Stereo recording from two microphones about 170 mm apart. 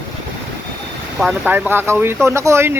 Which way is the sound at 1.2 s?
10° right (ahead or behind).